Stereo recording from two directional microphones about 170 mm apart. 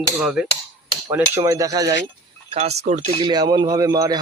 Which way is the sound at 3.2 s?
25° right (ahead or behind).